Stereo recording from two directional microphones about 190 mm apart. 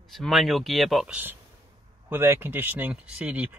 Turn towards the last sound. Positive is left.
turn(degrees=-10)  # may be behind; listen again after turning